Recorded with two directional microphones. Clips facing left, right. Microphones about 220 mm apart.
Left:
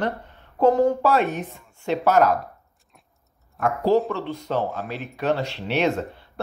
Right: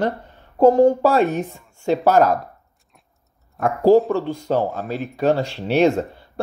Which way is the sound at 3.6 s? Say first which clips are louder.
Right 6 dB; 45° right (ahead or behind).